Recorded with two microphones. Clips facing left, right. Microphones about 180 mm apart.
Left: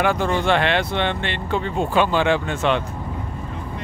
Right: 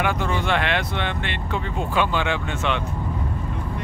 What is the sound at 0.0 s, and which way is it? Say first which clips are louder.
Speech: left 4 dB; 35° left (ahead or behind).